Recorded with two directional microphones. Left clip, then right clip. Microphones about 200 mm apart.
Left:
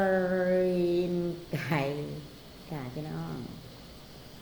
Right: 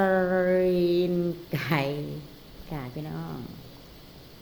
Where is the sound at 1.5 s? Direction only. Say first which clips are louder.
Right 3 dB; 25° right (ahead or behind).